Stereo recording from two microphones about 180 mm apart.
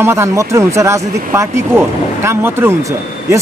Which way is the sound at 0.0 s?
15° right (ahead or behind).